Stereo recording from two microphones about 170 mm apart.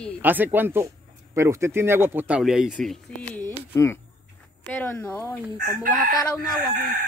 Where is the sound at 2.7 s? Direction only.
10° left (ahead or behind).